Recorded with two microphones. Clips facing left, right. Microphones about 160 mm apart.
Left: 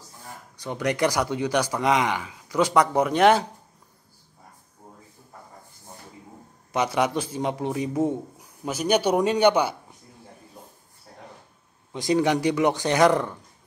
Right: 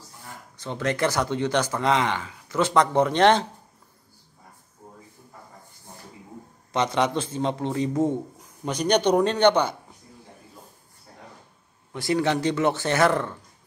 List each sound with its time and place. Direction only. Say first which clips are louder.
0.6 s a man's voice: left 1 dB; 15° left (ahead or behind)
6.7 s a man's voice: even; 10° left (ahead or behind)
11.9 s a man's voice: left 2 dB; 20° left (ahead or behind)